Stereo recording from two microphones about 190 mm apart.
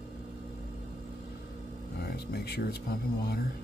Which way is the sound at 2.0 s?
55° left (ahead or behind).